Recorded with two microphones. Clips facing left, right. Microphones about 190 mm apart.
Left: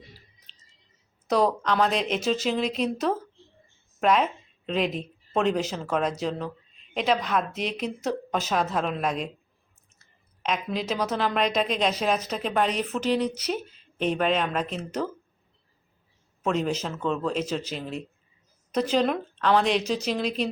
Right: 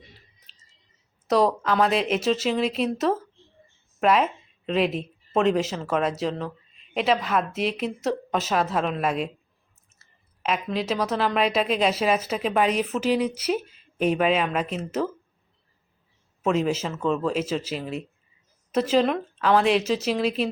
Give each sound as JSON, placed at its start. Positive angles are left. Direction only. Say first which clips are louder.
{"t": 0.5, "sound": "a sound", "louder": "left 1 dB", "side_deg": -5}
{"t": 1.3, "sound": "a woman's voice", "louder": "right 2 dB", "side_deg": 0}
{"t": 16.4, "sound": "a woman's voice", "louder": "right 3 dB", "side_deg": -5}